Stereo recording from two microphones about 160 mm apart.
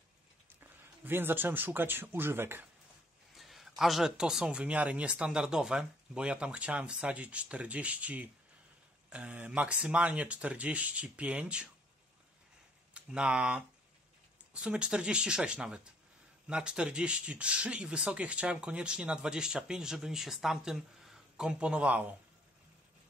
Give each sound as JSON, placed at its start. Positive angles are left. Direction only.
{"t": 0.6, "sound": "speech", "side_deg": -15}
{"t": 3.3, "sound": "speech", "side_deg": 0}
{"t": 12.9, "sound": "speech", "side_deg": -5}